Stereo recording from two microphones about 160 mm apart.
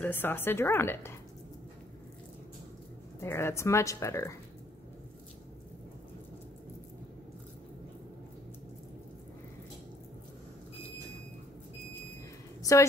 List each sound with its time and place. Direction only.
0.0 s speech: 10° left (ahead or behind)
3.2 s speech: 15° left (ahead or behind)